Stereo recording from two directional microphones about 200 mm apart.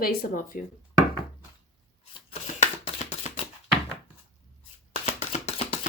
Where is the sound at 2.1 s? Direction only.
30° left (ahead or behind).